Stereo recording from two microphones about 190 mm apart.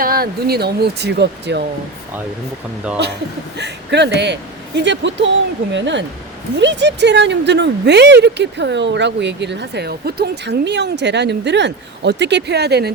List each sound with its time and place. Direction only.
0.0 s speech: 50° right (ahead or behind)
3.6 s a man's voice: 65° right (ahead or behind)